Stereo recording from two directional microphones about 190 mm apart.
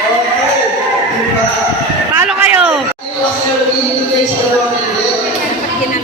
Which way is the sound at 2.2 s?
5° right (ahead or behind).